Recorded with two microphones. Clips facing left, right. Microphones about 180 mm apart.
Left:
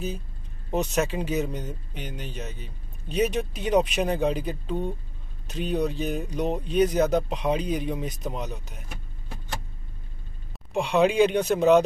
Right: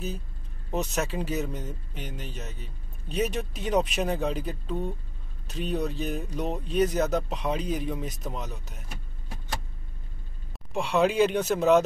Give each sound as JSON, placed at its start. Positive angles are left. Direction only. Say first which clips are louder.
{"t": 0.7, "sound": "speech", "louder": "left 4 dB", "side_deg": 0}
{"t": 10.7, "sound": "speech", "louder": "left 2 dB", "side_deg": 0}